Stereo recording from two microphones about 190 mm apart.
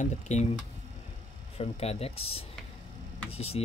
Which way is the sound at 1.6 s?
35° left (ahead or behind).